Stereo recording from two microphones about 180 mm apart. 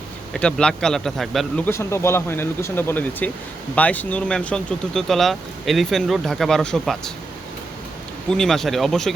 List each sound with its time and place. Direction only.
0.3 s speech: 5° left (ahead or behind)
1.6 s speech: 15° left (ahead or behind)
8.3 s speech: centre (ahead or behind)